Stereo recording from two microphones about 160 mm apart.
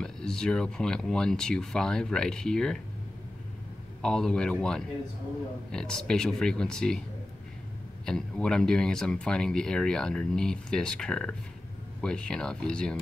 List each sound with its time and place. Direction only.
0.0 s speech: 5° left (ahead or behind)
4.0 s speech: 5° left (ahead or behind)
8.0 s speech: 5° left (ahead or behind)